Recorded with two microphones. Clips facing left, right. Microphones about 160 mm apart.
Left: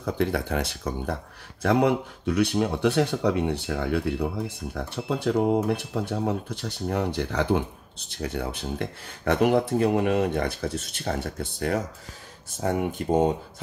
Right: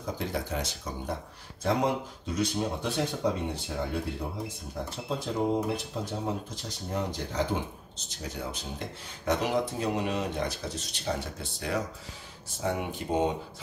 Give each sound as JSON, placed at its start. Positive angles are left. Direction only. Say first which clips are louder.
{"t": 0.0, "sound": "speech", "louder": "left 7 dB", "side_deg": 65}